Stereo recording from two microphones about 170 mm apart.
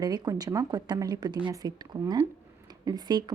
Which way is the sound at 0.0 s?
20° right (ahead or behind).